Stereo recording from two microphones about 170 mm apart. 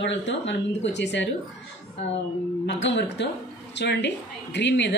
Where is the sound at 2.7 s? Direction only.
90° left.